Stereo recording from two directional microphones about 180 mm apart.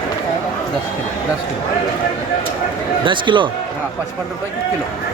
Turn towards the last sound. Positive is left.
turn(degrees=-25)  # may be behind; listen again after turning